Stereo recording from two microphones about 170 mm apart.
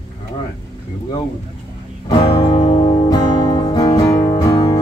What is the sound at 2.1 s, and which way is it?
Music, 30° left (ahead or behind).